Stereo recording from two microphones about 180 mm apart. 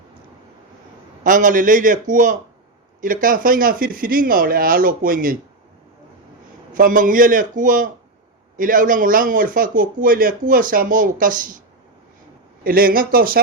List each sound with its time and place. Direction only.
1.2 s speech: 45° right (ahead or behind)
6.7 s speech: 50° right (ahead or behind)
12.6 s speech: 55° right (ahead or behind)